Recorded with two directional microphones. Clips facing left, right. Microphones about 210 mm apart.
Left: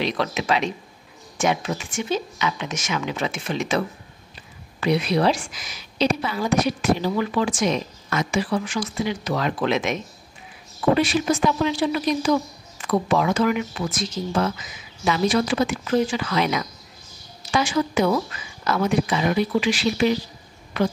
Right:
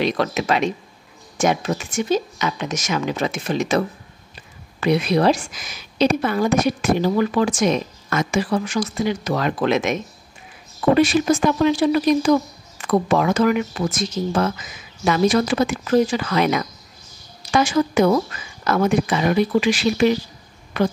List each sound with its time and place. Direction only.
0.0 s a woman's voice: 45° right (ahead or behind)
11.0 s a woman's voice: 45° right (ahead or behind)